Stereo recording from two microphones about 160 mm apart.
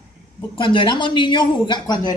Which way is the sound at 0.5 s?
30° left (ahead or behind).